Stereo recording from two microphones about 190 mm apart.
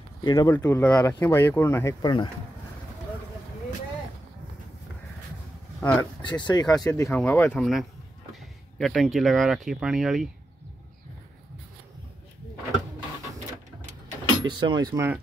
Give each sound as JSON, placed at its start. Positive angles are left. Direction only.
{"t": 0.2, "sound": "speech", "side_deg": 20}
{"t": 5.8, "sound": "speech", "side_deg": 10}
{"t": 6.2, "sound": "speech", "side_deg": 20}
{"t": 14.4, "sound": "speech", "side_deg": -25}